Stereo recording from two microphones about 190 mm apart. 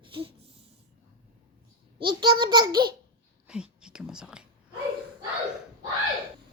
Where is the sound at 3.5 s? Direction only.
5° right (ahead or behind).